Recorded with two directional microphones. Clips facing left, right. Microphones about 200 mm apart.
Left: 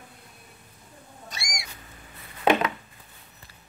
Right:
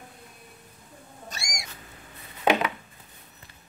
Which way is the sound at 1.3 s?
45° right (ahead or behind).